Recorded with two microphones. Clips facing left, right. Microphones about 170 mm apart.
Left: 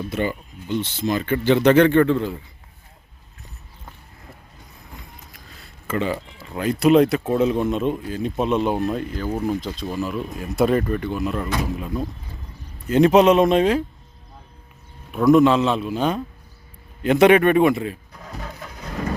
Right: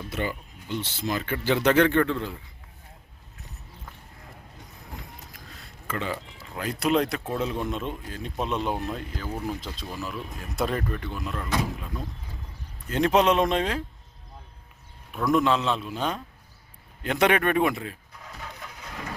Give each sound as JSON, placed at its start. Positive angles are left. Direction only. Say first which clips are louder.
{"t": 0.1, "sound": "speech", "louder": "left 3 dB", "side_deg": -5}
{"t": 5.9, "sound": "speech", "louder": "left 7 dB", "side_deg": 5}
{"t": 9.2, "sound": "speech", "louder": "left 8 dB", "side_deg": 35}
{"t": 9.8, "sound": "speech", "louder": "left 8 dB", "side_deg": 25}
{"t": 10.5, "sound": "speech", "louder": "left 9 dB", "side_deg": 5}
{"t": 12.9, "sound": "speech", "louder": "left 7 dB", "side_deg": 5}
{"t": 15.3, "sound": "speech", "louder": "left 8 dB", "side_deg": 5}
{"t": 18.3, "sound": "vehicle", "louder": "left 6 dB", "side_deg": 40}